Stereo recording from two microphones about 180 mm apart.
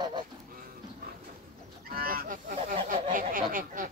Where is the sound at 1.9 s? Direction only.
55° right (ahead or behind).